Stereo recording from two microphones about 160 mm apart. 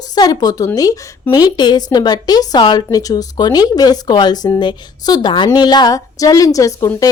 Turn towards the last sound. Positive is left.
turn(degrees=20)  # may be behind; listen again after turning